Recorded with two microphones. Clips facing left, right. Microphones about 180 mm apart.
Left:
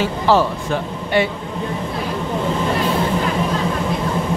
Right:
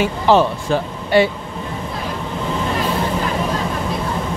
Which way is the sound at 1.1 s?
35° right (ahead or behind).